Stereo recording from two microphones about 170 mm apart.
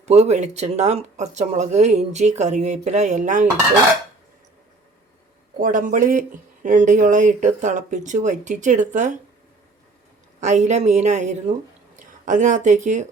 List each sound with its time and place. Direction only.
0.0 s speech: 40° right (ahead or behind)
5.5 s speech: 50° right (ahead or behind)
10.4 s a woman's voice: 45° right (ahead or behind)